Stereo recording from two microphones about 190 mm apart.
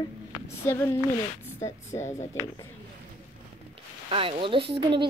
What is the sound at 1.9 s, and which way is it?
Speech, 25° left (ahead or behind).